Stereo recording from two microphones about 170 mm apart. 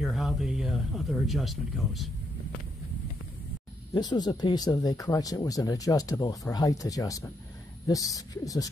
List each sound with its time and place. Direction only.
0.0 s speech: centre (ahead or behind)
3.9 s speech: 25° left (ahead or behind)